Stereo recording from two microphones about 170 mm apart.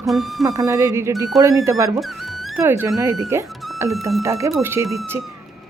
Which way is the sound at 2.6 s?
15° right (ahead or behind).